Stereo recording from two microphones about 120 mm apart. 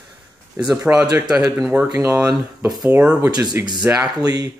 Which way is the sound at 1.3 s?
20° right (ahead or behind).